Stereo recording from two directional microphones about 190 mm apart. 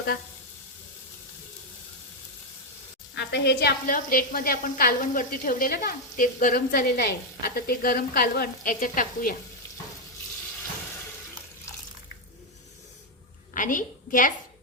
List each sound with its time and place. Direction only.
3.2 s a woman's voice: 60° left (ahead or behind); by 9.3 s 45° left (ahead or behind)
13.5 s a woman's voice: 45° left (ahead or behind)